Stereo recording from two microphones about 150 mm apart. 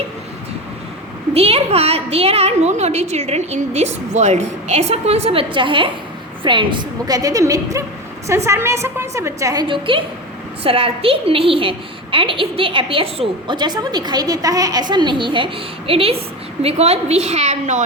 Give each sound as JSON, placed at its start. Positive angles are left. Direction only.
{"t": 1.3, "sound": "a woman's voice", "side_deg": -40}